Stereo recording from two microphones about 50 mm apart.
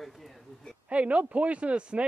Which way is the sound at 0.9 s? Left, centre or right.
Right.